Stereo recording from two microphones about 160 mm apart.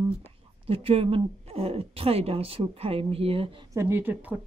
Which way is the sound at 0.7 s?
35° right (ahead or behind).